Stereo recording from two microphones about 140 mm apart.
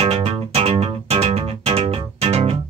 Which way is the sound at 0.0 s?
45° right (ahead or behind).